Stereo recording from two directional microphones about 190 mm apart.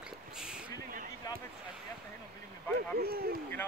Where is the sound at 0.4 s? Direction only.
5° right (ahead or behind).